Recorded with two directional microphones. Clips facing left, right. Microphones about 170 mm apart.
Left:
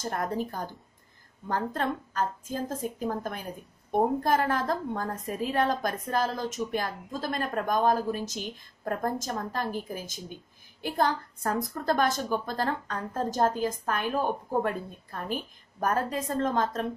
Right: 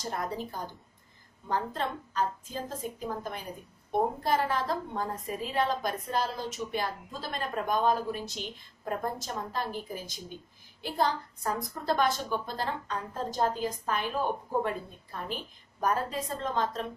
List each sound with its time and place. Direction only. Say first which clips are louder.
0.0 s a woman's voice: left 4 dB; 50° left (ahead or behind)